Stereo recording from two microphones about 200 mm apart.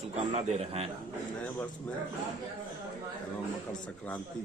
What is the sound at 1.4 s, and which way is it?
Speech, 10° left (ahead or behind).